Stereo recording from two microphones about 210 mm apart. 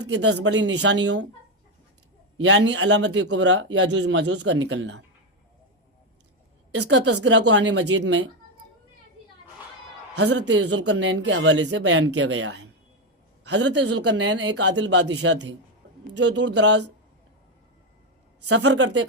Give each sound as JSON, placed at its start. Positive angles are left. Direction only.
{"t": 0.0, "sound": "speech", "side_deg": -60}
{"t": 2.4, "sound": "speech", "side_deg": -60}
{"t": 7.5, "sound": "speech", "side_deg": -55}
{"t": 10.2, "sound": "speech", "side_deg": -55}
{"t": 18.4, "sound": "speech", "side_deg": -55}